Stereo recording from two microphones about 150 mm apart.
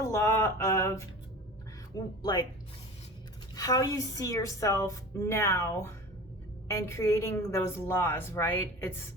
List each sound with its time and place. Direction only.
0.0 s a sound: 20° left (ahead or behind)
2.2 s a woman's voice: 30° left (ahead or behind)
3.5 s a woman's voice: 25° left (ahead or behind)